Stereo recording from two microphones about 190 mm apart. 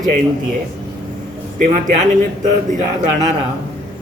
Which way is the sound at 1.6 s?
40° right (ahead or behind).